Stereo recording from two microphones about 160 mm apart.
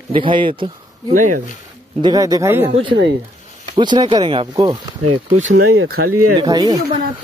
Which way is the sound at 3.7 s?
30° right (ahead or behind).